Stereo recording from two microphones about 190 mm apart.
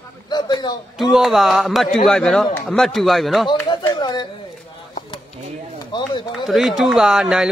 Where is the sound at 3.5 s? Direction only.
20° left (ahead or behind).